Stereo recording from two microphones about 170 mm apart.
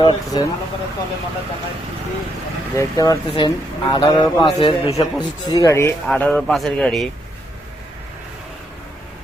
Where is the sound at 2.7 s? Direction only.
20° left (ahead or behind).